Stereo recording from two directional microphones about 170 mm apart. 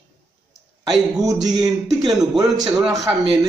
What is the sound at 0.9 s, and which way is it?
A man's voice, 20° right (ahead or behind).